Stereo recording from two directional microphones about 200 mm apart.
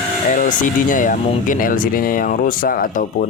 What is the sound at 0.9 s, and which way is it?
Speech, 40° left (ahead or behind).